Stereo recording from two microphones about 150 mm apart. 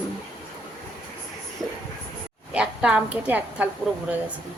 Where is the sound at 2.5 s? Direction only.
5° right (ahead or behind).